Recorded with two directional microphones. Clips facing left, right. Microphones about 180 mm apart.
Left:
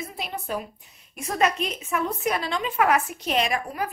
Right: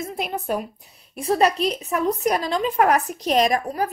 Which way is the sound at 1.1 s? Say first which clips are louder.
Right 5 dB; 35° right (ahead or behind).